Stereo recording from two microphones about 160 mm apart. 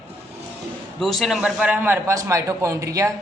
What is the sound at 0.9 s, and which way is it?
A man's voice, centre (ahead or behind).